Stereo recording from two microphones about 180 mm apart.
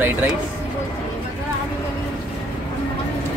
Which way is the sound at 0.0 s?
10° right (ahead or behind).